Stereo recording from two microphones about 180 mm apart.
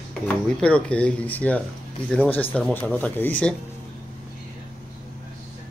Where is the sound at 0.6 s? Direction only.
5° left (ahead or behind).